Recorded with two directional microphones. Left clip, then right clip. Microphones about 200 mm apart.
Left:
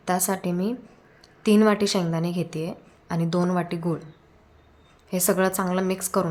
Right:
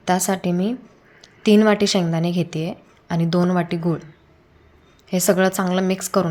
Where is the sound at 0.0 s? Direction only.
15° right (ahead or behind).